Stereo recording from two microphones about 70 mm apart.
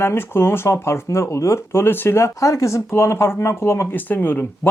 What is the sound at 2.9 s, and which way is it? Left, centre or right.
Speech, left.